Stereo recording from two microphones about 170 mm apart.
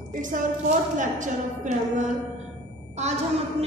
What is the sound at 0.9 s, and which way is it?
Speech, 45° right (ahead or behind).